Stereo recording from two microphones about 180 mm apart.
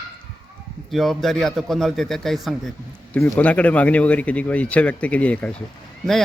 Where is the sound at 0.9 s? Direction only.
Centre (ahead or behind).